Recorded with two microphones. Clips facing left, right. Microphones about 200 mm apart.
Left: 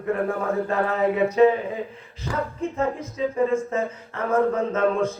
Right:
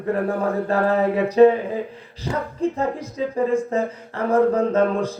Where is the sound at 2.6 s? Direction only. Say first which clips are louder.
Right 4 dB; 35° right (ahead or behind).